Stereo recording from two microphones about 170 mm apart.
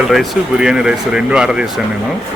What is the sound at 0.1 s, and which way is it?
Speech, 5° right (ahead or behind).